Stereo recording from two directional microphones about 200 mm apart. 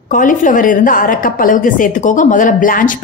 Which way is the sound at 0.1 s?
40° left (ahead or behind).